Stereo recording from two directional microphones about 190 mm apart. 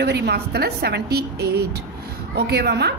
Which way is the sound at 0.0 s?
65° right (ahead or behind).